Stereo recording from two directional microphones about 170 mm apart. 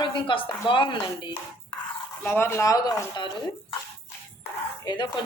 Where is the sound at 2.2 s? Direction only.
10° left (ahead or behind).